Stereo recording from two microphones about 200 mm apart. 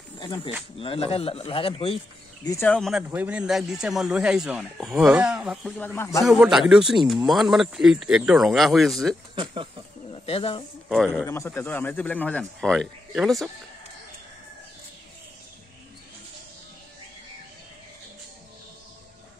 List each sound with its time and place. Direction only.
0.7 s speech: 30° left (ahead or behind)
2.4 s a man's voice: 10° left (ahead or behind)
6.2 s a man's voice: centre (ahead or behind)
9.3 s speech: 25° right (ahead or behind)
10.1 s speech: 30° left (ahead or behind)
10.9 s a man's voice: centre (ahead or behind)
11.2 s speech: 15° left (ahead or behind)